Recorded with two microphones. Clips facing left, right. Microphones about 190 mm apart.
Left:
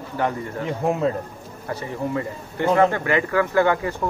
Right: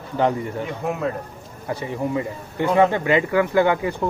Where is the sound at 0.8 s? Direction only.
25° left (ahead or behind).